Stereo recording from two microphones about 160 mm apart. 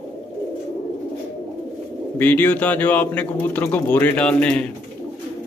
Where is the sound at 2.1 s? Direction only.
10° left (ahead or behind).